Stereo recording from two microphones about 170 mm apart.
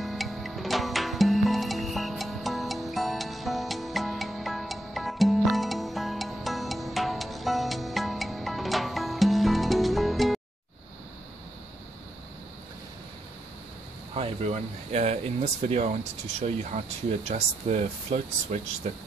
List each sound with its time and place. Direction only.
0.0 s music: centre (ahead or behind)
14.1 s speech: 40° right (ahead or behind)